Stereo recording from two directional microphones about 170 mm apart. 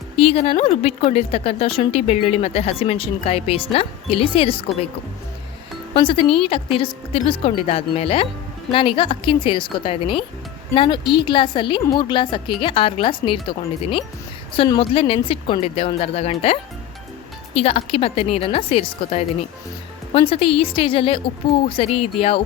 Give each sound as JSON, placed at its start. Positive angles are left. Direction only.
{"t": 0.2, "sound": "a woman's voice", "side_deg": 35}
{"t": 5.9, "sound": "a woman's voice", "side_deg": 30}